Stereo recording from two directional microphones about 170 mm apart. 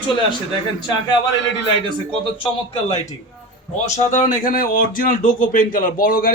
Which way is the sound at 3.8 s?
45° left (ahead or behind).